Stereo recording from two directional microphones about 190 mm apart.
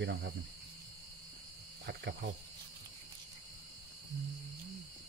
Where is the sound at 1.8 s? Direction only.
60° right (ahead or behind).